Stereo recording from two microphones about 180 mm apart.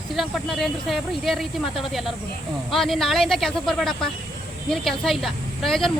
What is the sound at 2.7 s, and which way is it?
Speech, centre (ahead or behind).